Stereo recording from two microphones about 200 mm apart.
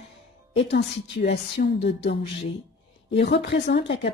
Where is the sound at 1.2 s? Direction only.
55° left (ahead or behind).